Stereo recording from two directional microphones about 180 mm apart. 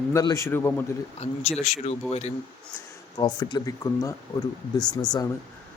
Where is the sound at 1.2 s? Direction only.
35° left (ahead or behind).